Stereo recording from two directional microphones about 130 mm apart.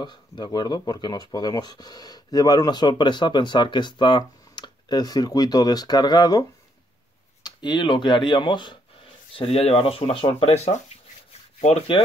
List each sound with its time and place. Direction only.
0.0 s speech: 35° left (ahead or behind)
7.4 s speech: 35° left (ahead or behind)
9.3 s speech: 50° left (ahead or behind)